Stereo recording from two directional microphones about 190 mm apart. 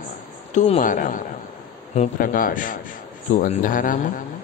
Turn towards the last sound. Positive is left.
turn(degrees=45)  # may be behind; listen again after turning